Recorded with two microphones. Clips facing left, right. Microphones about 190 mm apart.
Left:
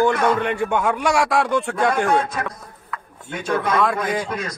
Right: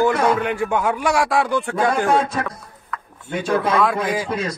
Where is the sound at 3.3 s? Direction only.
25° right (ahead or behind).